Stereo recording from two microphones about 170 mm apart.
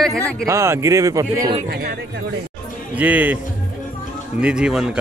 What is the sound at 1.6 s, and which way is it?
Speech, 70° right (ahead or behind).